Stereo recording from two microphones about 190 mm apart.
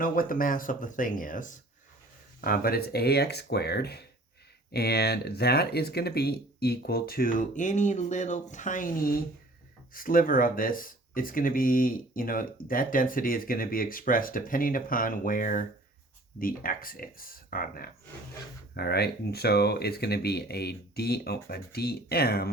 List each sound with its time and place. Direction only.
0.0 s speech: 45° left (ahead or behind)